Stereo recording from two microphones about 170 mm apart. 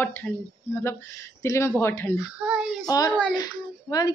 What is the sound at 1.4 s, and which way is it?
Speech, 15° left (ahead or behind).